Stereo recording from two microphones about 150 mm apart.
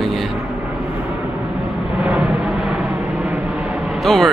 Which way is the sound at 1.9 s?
10° right (ahead or behind).